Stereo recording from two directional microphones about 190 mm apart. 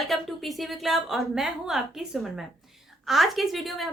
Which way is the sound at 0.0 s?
Centre (ahead or behind).